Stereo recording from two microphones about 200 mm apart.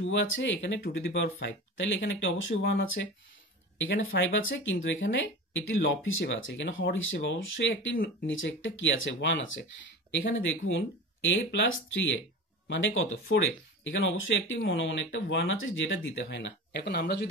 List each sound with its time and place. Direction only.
0.0 s speech: 65° left (ahead or behind)